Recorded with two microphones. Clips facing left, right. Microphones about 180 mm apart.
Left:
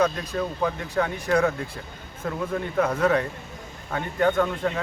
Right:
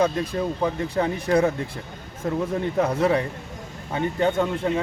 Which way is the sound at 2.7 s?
30° right (ahead or behind).